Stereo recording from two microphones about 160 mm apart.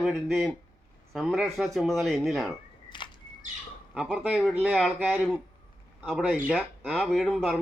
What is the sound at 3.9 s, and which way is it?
Speech, 5° right (ahead or behind).